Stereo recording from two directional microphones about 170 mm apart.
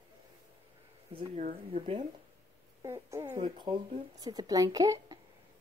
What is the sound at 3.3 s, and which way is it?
Speech, 30° right (ahead or behind).